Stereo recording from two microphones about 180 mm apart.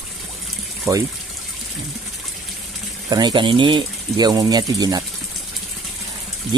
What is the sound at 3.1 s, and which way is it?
Speech, 25° right (ahead or behind).